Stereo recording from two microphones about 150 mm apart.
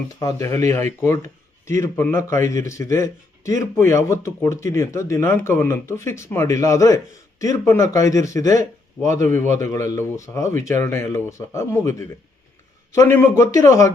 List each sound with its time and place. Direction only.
0.2 s a man's voice: 20° left (ahead or behind)